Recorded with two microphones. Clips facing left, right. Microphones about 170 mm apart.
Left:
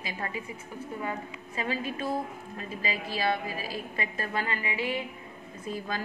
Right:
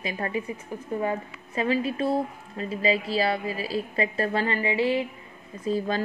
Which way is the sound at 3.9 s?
35° right (ahead or behind).